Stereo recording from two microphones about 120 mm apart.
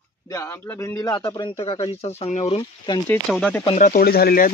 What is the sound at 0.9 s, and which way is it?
Speech, 35° left (ahead or behind).